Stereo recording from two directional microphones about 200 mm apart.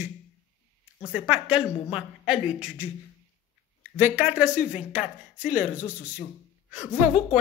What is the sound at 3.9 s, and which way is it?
A woman's voice, 10° right (ahead or behind).